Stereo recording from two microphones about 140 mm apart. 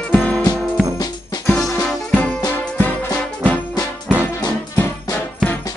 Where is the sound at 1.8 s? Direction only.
5° left (ahead or behind).